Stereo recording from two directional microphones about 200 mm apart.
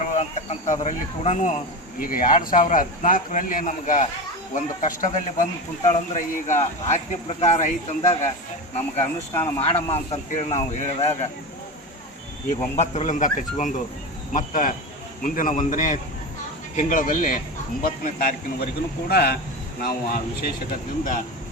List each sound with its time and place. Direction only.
0.0 s a man's voice: 35° left (ahead or behind)
12.7 s a man's voice: 35° left (ahead or behind)